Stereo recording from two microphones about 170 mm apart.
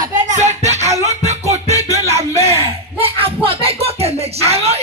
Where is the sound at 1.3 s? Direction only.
40° right (ahead or behind).